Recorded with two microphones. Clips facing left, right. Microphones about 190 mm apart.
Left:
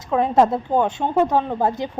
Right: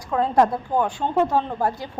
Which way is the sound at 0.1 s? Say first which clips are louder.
Left 2 dB; 20° left (ahead or behind).